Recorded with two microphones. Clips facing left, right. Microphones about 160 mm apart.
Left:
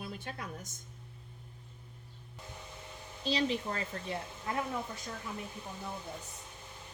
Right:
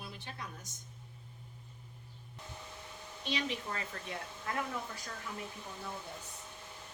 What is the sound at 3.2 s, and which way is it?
A woman's voice, 35° left (ahead or behind).